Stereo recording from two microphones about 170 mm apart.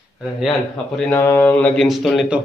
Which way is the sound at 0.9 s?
10° left (ahead or behind).